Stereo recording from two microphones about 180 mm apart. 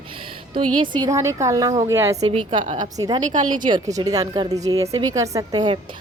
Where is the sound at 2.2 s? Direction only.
30° right (ahead or behind).